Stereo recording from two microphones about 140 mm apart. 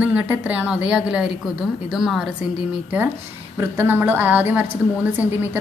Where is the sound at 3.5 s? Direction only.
15° right (ahead or behind).